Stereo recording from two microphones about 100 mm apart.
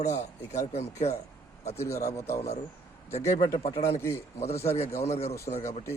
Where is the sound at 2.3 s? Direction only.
90° left.